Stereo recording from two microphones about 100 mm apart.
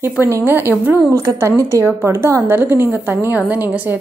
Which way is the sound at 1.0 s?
30° right (ahead or behind).